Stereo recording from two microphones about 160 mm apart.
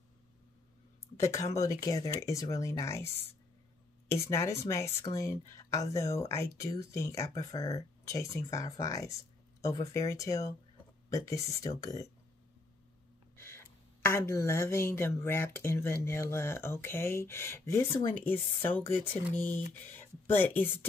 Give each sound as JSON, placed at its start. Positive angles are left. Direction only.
{"t": 1.0, "sound": "a woman's voice", "side_deg": 20}
{"t": 13.4, "sound": "a woman's voice", "side_deg": 15}